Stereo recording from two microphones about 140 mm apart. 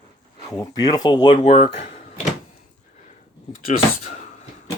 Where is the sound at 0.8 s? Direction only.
30° left (ahead or behind).